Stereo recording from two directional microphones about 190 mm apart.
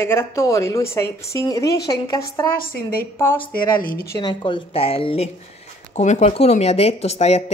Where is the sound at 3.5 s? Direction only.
50° left (ahead or behind).